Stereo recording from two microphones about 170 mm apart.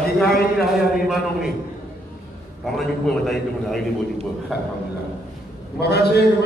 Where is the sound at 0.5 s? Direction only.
Centre (ahead or behind).